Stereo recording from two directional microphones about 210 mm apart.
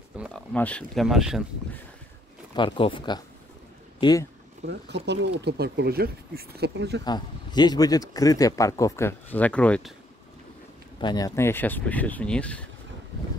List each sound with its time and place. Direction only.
0.2 s speech: 5° left (ahead or behind)
2.5 s speech: 25° left (ahead or behind)
4.6 s speech: 55° right (ahead or behind)
7.1 s speech: 20° left (ahead or behind)
11.0 s speech: 20° left (ahead or behind)